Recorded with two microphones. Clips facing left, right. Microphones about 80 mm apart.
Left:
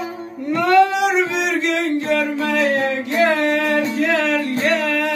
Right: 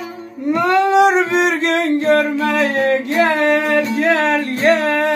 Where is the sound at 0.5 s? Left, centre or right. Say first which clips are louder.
Right 1 dB; right.